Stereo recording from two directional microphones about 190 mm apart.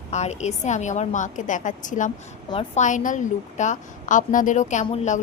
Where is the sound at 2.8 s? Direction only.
40° left (ahead or behind).